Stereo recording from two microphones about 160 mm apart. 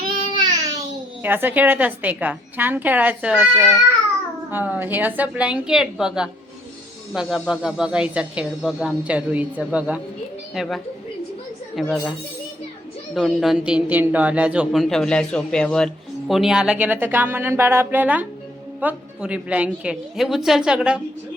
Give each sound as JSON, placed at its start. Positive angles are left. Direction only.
{"t": 0.3, "sound": "a sound", "side_deg": -25}
{"t": 1.2, "sound": "speech", "side_deg": -10}
{"t": 11.8, "sound": "speech", "side_deg": 0}
{"t": 13.1, "sound": "speech", "side_deg": 0}